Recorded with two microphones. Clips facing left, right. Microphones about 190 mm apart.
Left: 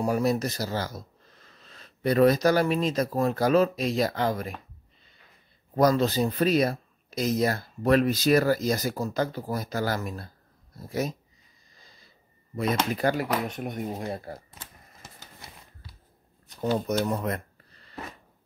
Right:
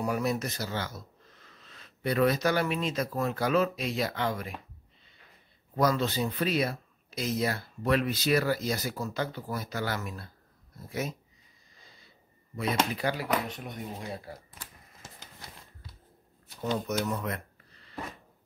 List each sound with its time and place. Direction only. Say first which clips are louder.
0.0 s speech: left 5 dB; 35° left (ahead or behind)
5.8 s speech: left 5 dB; 40° left (ahead or behind)
12.5 s speech: left 3 dB; 45° left (ahead or behind)
16.7 s speech: left 4 dB; 35° left (ahead or behind)